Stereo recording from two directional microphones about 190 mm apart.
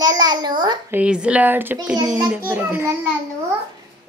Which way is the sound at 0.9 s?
5° right (ahead or behind).